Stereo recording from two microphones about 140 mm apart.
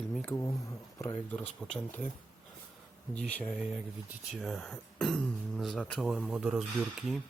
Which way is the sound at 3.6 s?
10° right (ahead or behind).